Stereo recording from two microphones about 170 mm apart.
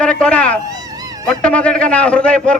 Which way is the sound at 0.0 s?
5° left (ahead or behind).